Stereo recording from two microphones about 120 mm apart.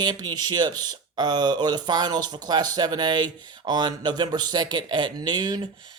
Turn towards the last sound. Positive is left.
turn(degrees=-35)  # may be behind; listen again after turning